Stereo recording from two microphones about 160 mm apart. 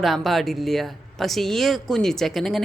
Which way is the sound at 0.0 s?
Centre (ahead or behind).